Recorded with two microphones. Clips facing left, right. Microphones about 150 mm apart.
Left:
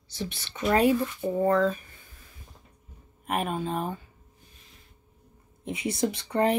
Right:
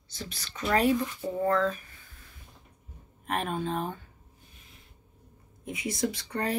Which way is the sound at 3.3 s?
10° left (ahead or behind).